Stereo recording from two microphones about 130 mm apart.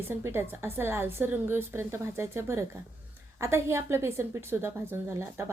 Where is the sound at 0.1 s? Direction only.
20° right (ahead or behind).